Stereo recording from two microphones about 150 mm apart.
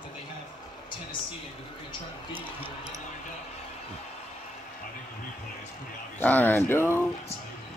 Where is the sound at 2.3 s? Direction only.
15° right (ahead or behind).